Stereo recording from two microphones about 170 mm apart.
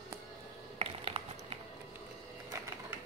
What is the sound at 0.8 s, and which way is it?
Tap, 35° right (ahead or behind).